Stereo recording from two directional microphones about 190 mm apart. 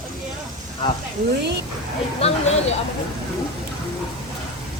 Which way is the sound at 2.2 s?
30° left (ahead or behind).